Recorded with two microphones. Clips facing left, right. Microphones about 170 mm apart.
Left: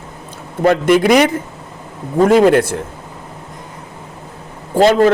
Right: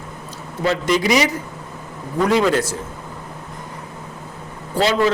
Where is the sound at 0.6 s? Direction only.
55° left (ahead or behind).